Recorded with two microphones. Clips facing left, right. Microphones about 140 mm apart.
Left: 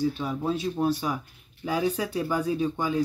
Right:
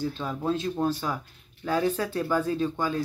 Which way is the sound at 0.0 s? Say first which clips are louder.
Left 2 dB; 10° left (ahead or behind).